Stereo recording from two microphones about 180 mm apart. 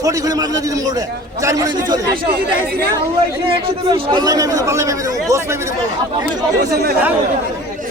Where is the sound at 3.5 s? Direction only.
25° right (ahead or behind).